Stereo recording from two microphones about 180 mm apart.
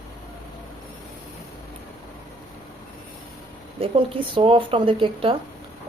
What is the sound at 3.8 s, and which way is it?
Speech, 30° right (ahead or behind).